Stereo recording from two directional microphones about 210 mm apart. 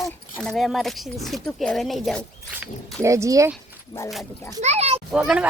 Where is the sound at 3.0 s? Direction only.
15° right (ahead or behind).